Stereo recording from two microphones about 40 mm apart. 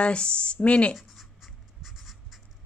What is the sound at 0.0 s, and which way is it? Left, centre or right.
Speech, left.